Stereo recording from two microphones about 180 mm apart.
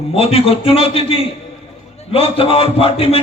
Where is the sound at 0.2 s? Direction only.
30° left (ahead or behind).